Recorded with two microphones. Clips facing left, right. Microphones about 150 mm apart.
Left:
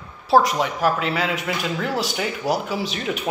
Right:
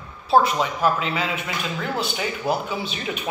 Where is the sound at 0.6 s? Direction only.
65° left (ahead or behind).